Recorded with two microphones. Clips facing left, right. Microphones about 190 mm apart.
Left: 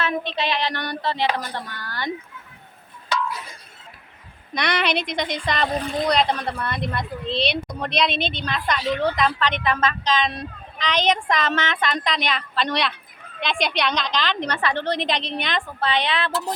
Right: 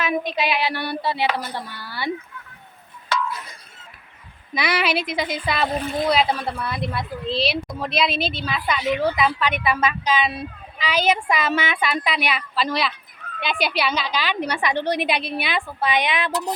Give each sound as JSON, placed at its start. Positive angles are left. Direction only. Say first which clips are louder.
{"t": 0.0, "sound": "speech", "louder": "right 2 dB", "side_deg": -10}
{"t": 4.5, "sound": "speech", "louder": "right 1 dB", "side_deg": -5}